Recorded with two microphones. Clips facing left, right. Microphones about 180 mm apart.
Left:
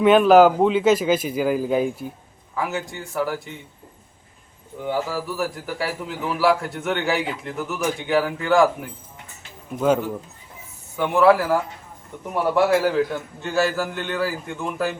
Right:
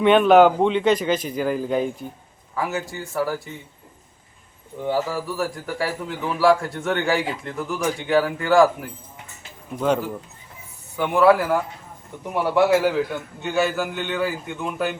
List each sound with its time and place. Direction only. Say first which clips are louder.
0.0 s a man's voice: left 1 dB; centre (ahead or behind)
4.8 s a man's voice: right 1 dB; centre (ahead or behind)